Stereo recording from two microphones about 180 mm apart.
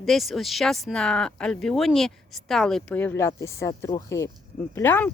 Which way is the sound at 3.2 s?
15° left (ahead or behind).